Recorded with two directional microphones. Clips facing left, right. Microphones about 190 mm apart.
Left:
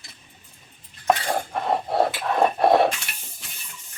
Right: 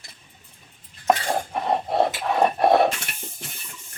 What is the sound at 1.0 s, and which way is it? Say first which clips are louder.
Cutlery: right 1 dB; 5° right (ahead or behind).